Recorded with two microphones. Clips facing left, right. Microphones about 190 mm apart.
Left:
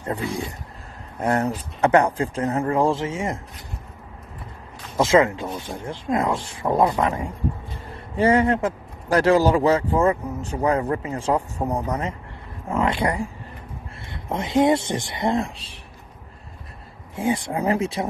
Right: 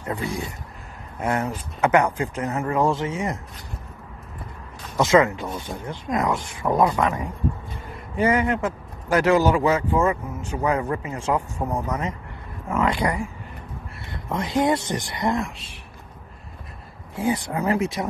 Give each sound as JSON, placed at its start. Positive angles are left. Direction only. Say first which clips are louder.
{"t": 0.0, "sound": "speech", "louder": "left 1 dB", "side_deg": 30}
{"t": 4.9, "sound": "speech", "louder": "even", "side_deg": 25}
{"t": 17.1, "sound": "speech", "louder": "left 1 dB", "side_deg": 25}